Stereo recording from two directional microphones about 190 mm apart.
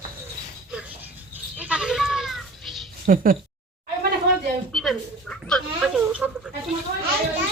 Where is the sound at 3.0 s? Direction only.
50° right (ahead or behind).